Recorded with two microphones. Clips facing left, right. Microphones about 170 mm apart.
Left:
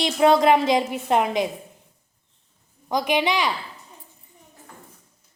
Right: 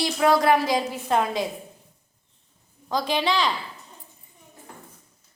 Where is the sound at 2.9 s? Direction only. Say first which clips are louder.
Left 2 dB; 15° left (ahead or behind).